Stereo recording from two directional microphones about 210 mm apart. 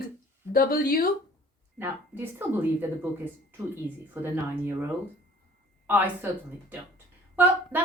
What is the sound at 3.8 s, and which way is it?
A woman's voice, 10° right (ahead or behind).